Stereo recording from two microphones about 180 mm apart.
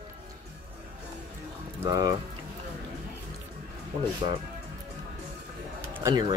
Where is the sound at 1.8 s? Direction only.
20° right (ahead or behind).